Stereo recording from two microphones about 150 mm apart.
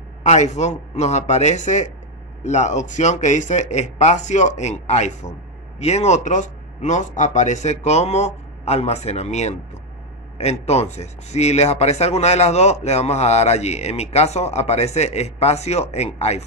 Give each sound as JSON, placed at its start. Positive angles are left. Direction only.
{"t": 0.2, "sound": "speech", "side_deg": 50}